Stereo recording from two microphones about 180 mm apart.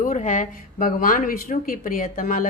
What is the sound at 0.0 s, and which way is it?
Speech, 45° left (ahead or behind).